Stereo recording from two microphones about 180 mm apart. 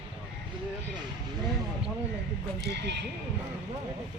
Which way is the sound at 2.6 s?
70° right (ahead or behind).